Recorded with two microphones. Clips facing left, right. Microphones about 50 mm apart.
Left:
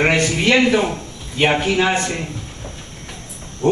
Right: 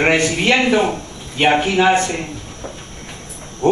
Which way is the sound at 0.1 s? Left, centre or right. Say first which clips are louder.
Right 1 dB; centre.